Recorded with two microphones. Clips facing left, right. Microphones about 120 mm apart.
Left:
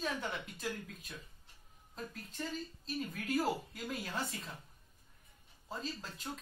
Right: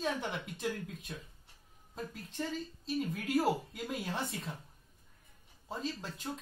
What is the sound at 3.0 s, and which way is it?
Speech, 5° right (ahead or behind).